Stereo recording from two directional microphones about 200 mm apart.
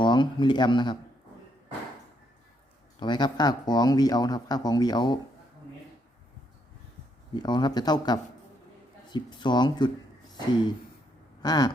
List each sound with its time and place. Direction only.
0.0 s speech: 25° left (ahead or behind)
3.0 s speech: 20° left (ahead or behind)
7.3 s speech: 20° left (ahead or behind)
11.4 s speech: 20° left (ahead or behind)